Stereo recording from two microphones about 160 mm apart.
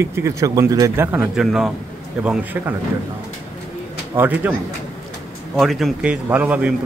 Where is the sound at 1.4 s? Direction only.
Centre (ahead or behind).